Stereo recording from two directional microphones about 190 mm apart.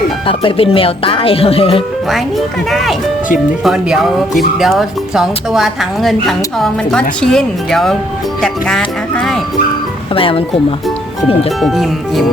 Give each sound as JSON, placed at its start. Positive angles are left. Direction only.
{"t": 0.3, "sound": "speech", "side_deg": 30}
{"t": 2.6, "sound": "speech", "side_deg": 0}
{"t": 10.2, "sound": "speech", "side_deg": 30}
{"t": 11.6, "sound": "speech", "side_deg": 0}